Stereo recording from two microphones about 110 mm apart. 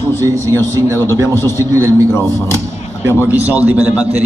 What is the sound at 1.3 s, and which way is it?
Speech, 25° left (ahead or behind).